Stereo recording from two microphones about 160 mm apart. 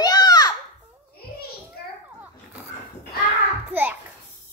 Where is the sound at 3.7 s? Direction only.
10° right (ahead or behind).